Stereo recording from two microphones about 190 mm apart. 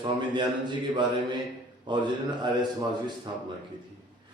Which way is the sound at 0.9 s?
25° right (ahead or behind).